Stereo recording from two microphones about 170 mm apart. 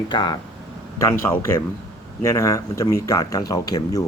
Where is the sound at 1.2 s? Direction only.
15° left (ahead or behind).